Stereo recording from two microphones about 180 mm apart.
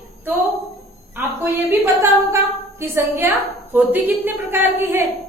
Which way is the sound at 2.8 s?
10° right (ahead or behind).